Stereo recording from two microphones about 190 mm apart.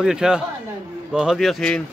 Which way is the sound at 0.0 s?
5° right (ahead or behind).